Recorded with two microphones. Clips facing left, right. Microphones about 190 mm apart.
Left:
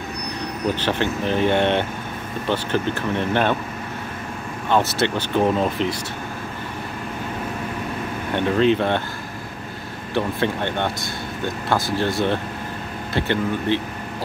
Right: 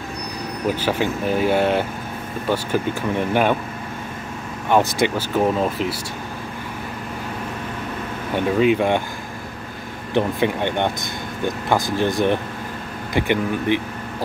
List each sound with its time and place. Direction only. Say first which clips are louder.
0.7 s speech: right 1 dB; 10° right (ahead or behind)
4.6 s speech: right 2 dB; 15° right (ahead or behind)
8.3 s speech: right 1 dB; 10° right (ahead or behind)
10.1 s speech: right 3 dB; 15° right (ahead or behind)